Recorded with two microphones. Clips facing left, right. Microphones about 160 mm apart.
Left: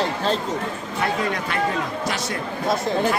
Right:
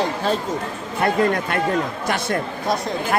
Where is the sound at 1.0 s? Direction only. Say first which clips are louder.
Right 6 dB; 50° right (ahead or behind).